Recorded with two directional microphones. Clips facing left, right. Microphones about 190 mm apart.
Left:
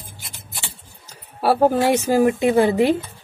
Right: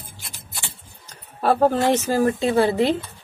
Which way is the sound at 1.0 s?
10° left (ahead or behind).